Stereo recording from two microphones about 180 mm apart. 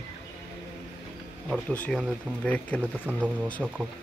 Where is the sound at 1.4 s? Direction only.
5° left (ahead or behind).